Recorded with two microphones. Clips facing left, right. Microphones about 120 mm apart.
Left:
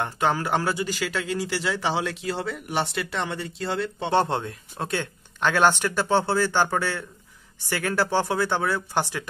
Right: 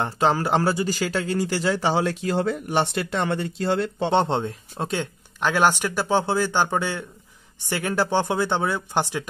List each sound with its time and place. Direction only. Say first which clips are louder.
0.0 s a man's voice: right 3 dB; 30° right (ahead or behind); by 4.1 s 45° right (ahead or behind)
4.1 s speech: even; 20° right (ahead or behind)